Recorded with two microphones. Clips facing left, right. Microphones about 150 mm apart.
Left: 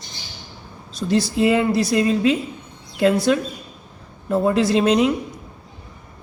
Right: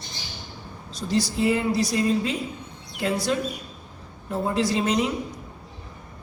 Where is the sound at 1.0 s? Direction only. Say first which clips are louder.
Left 5 dB; 65° left (ahead or behind).